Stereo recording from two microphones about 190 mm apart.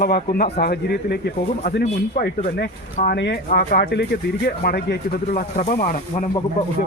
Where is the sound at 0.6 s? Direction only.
55° left (ahead or behind); by 6.2 s 40° left (ahead or behind).